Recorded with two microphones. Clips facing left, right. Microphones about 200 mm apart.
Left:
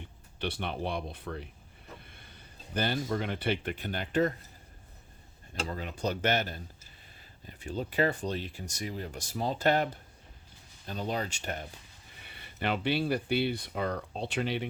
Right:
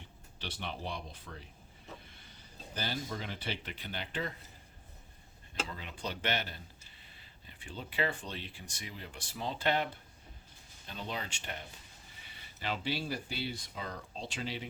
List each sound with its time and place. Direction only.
0.3 s speech: 55° left (ahead or behind)
5.6 s speech: 45° left (ahead or behind)
12.2 s speech: 60° left (ahead or behind)